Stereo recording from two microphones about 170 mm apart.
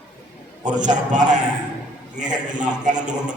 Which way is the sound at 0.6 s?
45° right (ahead or behind).